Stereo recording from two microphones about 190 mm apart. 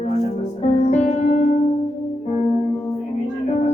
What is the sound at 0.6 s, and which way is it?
Music, 35° left (ahead or behind).